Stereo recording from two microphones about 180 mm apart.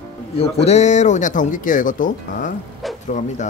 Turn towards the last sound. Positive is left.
turn(degrees=40)  # may be behind; listen again after turning